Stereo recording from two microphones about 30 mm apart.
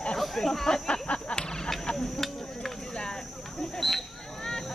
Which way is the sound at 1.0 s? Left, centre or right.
Left.